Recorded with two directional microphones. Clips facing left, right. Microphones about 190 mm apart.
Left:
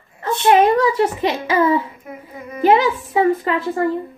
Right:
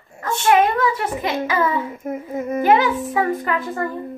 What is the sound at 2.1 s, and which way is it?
Speech, 45° right (ahead or behind).